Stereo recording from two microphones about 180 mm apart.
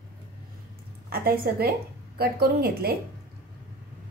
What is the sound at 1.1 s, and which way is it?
A woman's voice, 60° right (ahead or behind).